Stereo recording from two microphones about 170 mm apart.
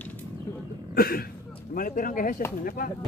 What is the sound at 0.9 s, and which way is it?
Speech, 60° left (ahead or behind).